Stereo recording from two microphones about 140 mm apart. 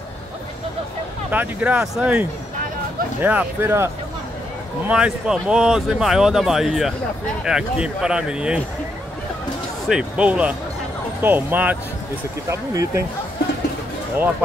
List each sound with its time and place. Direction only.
1.3 s speech: 10° right (ahead or behind)
4.8 s speech: 5° right (ahead or behind)
9.8 s speech: 5° right (ahead or behind)